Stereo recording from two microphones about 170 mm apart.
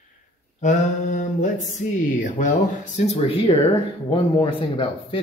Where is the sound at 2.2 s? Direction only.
50° left (ahead or behind).